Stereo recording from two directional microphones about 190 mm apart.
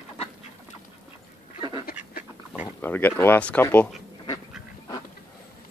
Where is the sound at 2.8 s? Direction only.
10° left (ahead or behind).